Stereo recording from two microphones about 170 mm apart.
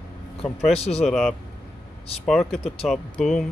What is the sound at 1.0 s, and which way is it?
Speech, centre (ahead or behind).